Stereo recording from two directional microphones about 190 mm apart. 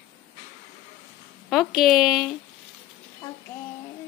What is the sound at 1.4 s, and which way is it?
Speech, centre (ahead or behind).